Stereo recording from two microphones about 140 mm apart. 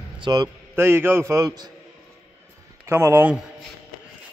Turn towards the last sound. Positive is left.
turn(degrees=-15)  # may be behind; listen again after turning